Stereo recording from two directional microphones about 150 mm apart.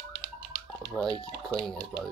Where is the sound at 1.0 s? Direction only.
Centre (ahead or behind).